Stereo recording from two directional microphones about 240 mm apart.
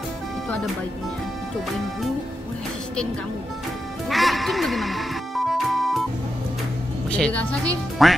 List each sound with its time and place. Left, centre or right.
4.1 s music: centre
7.1 s music: centre
8.0 s speech: centre